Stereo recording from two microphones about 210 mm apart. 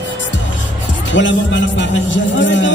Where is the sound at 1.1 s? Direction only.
60° left (ahead or behind).